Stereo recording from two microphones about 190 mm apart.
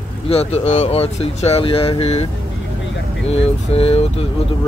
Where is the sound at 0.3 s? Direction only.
35° left (ahead or behind).